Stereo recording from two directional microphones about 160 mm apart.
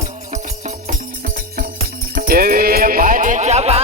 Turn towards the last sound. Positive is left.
turn(degrees=-45)  # may be behind; listen again after turning